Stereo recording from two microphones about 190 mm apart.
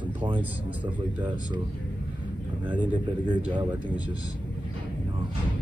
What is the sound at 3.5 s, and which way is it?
Speech, 25° right (ahead or behind).